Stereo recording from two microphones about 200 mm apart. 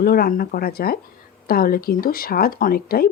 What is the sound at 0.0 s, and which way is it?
A woman's voice, 50° left (ahead or behind).